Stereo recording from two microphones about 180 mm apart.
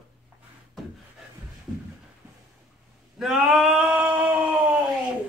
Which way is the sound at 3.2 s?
5° right (ahead or behind).